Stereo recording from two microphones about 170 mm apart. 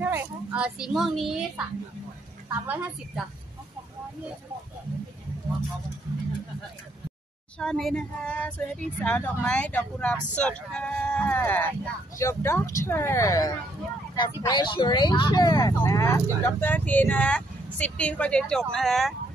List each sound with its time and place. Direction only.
0.0 s speech: 10° right (ahead or behind)
2.6 s a woman's voice: 10° right (ahead or behind)
7.5 s speech: 5° left (ahead or behind)